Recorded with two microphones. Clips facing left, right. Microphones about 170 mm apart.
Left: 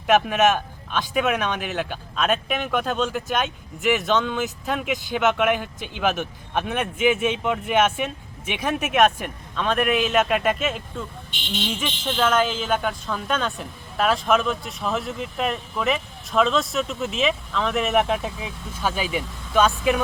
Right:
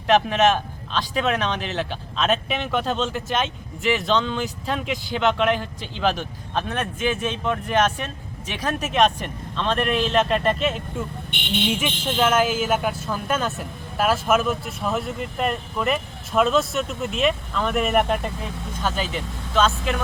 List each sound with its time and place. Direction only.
0.1 s speech: 5° left (ahead or behind)
11.3 s speech: 60° right (ahead or behind)
11.7 s speech: 10° right (ahead or behind); by 20.0 s 15° left (ahead or behind)